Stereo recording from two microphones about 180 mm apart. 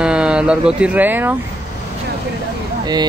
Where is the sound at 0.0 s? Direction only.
5° right (ahead or behind).